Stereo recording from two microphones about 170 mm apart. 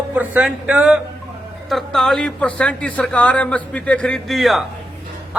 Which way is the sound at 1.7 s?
Centre (ahead or behind).